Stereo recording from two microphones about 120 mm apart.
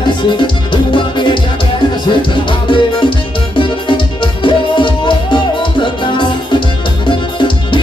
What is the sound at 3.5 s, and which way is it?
Music, 40° left (ahead or behind).